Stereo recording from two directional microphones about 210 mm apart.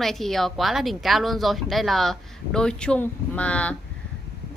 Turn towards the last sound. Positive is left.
turn(degrees=5)  # may be behind; listen again after turning